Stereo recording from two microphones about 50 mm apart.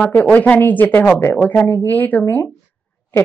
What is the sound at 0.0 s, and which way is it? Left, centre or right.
Speech, left.